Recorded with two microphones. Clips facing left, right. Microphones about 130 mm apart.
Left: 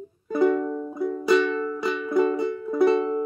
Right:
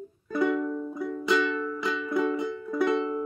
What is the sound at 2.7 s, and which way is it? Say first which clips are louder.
Music: left 6 dB; 25° left (ahead or behind).